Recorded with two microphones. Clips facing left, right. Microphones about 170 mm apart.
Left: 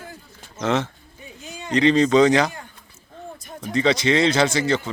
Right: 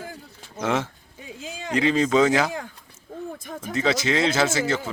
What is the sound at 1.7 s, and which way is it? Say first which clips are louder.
Speech: left 4 dB; 5° right (ahead or behind).